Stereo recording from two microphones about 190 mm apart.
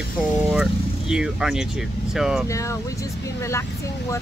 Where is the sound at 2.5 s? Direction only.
15° left (ahead or behind).